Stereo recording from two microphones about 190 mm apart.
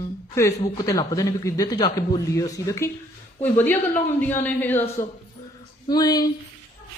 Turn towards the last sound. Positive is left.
turn(degrees=20)  # may be behind; listen again after turning